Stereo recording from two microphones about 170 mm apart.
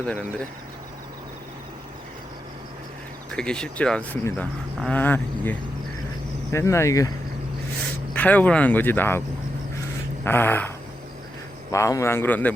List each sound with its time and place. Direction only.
0.0 s speech: 5° left (ahead or behind)
3.3 s speech: 5° left (ahead or behind)
8.1 s speech: 10° left (ahead or behind)
10.2 s speech: 10° left (ahead or behind)
11.7 s speech: 20° left (ahead or behind)